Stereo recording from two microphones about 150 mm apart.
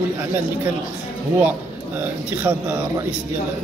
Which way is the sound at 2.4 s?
15° right (ahead or behind).